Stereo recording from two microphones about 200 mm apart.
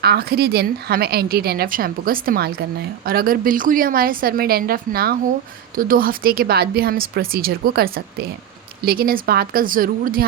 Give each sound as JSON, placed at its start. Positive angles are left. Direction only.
{"t": 0.0, "sound": "a woman's voice", "side_deg": -50}